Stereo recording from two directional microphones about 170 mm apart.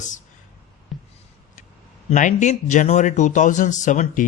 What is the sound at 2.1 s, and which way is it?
A man's voice, 50° left (ahead or behind).